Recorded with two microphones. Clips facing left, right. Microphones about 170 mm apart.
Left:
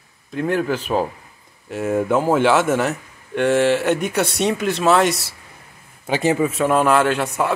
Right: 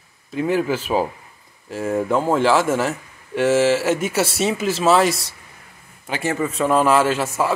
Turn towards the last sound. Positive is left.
turn(degrees=0)  # may be behind; listen again after turning